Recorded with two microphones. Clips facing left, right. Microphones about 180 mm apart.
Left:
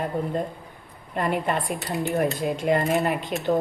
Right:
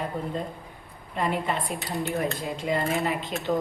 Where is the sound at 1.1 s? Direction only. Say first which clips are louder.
Left 3 dB; 55° left (ahead or behind).